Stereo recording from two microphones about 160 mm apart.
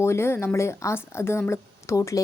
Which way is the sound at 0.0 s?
15° left (ahead or behind).